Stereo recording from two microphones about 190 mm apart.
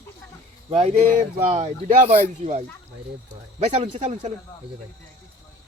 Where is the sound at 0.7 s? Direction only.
30° right (ahead or behind).